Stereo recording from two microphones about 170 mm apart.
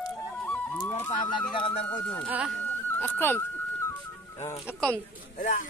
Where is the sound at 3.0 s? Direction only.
10° left (ahead or behind).